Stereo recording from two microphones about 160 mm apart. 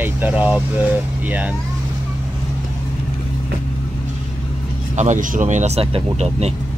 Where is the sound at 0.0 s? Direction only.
10° right (ahead or behind).